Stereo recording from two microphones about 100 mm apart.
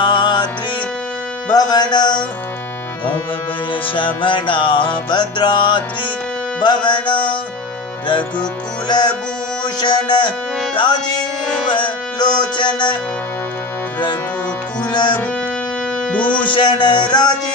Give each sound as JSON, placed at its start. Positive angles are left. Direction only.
{"t": 0.0, "sound": "music", "side_deg": 50}
{"t": 1.5, "sound": "music", "side_deg": 45}
{"t": 3.9, "sound": "music", "side_deg": 60}
{"t": 8.4, "sound": "music", "side_deg": 45}
{"t": 14.8, "sound": "music", "side_deg": 50}
{"t": 16.1, "sound": "speech", "side_deg": 15}
{"t": 16.5, "sound": "music", "side_deg": 50}